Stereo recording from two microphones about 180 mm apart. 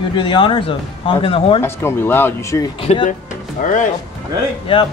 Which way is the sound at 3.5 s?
45° left (ahead or behind).